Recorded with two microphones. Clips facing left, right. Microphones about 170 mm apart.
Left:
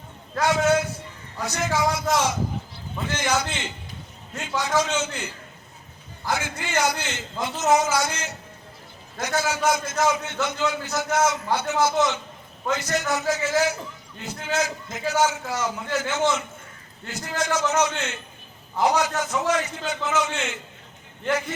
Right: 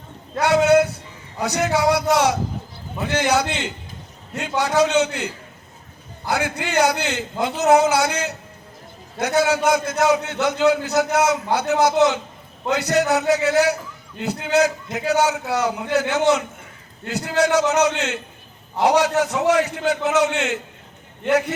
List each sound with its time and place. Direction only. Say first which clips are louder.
0.3 s a sound: right 6 dB; 65° right (ahead or behind)
1.4 s a man's voice: right 5 dB; 65° right (ahead or behind)
6.3 s a man's voice: right 6 dB; 65° right (ahead or behind)